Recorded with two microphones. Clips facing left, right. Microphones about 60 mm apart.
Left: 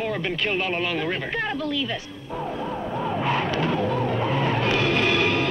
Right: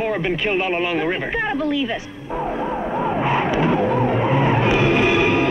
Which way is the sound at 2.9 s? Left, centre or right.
Right.